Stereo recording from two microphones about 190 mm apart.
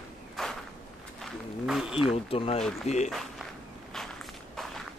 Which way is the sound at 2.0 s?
30° left (ahead or behind).